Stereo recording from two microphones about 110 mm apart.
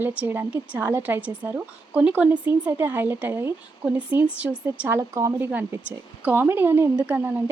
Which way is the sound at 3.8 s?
10° right (ahead or behind).